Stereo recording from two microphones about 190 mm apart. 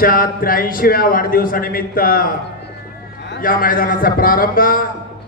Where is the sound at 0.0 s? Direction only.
50° left (ahead or behind).